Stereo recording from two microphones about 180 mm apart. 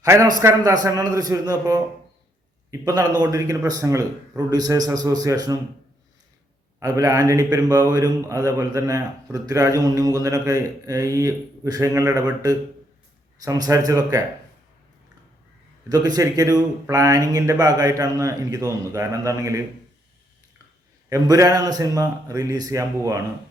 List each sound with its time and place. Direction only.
0.0 s a man's voice: 20° right (ahead or behind)
6.7 s a man's voice: 20° right (ahead or behind)
15.9 s a man's voice: 20° right (ahead or behind)
21.1 s a man's voice: 20° right (ahead or behind)